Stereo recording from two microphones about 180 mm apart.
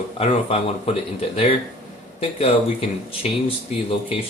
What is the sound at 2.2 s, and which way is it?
Speech, 30° left (ahead or behind).